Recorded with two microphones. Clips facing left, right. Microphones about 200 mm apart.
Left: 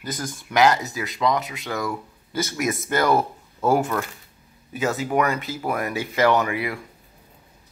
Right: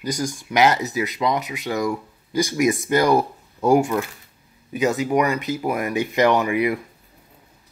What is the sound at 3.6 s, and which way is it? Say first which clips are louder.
Speech: right 4 dB; 15° right (ahead or behind).